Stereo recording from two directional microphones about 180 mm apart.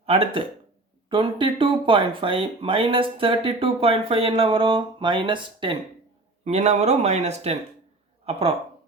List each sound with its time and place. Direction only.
0.0 s speech: 30° right (ahead or behind)
6.4 s speech: 40° right (ahead or behind)